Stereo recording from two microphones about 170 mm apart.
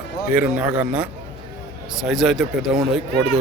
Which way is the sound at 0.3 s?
10° right (ahead or behind).